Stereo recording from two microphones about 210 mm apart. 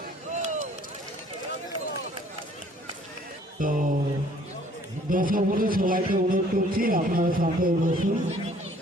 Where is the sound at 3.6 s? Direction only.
40° right (ahead or behind).